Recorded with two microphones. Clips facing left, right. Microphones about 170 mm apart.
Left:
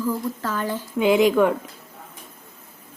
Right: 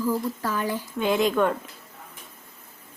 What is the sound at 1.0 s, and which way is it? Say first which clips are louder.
Speech: left 6 dB; 10° left (ahead or behind).